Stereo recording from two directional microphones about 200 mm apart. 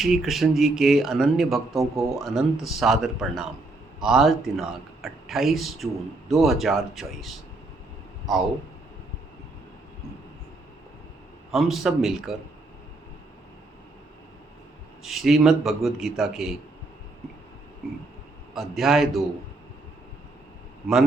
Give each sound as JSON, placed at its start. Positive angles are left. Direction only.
{"t": 0.0, "sound": "a man's voice", "side_deg": 0}
{"t": 11.5, "sound": "a man's voice", "side_deg": 0}
{"t": 15.0, "sound": "a man's voice", "side_deg": 0}
{"t": 18.5, "sound": "a man's voice", "side_deg": 0}